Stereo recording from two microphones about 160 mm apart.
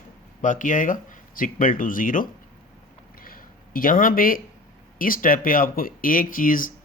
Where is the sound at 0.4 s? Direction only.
55° left (ahead or behind).